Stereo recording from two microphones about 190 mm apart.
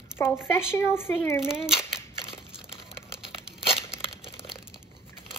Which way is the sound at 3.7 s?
30° left (ahead or behind).